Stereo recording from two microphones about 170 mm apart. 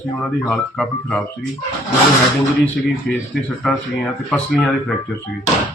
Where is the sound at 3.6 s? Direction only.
5° left (ahead or behind).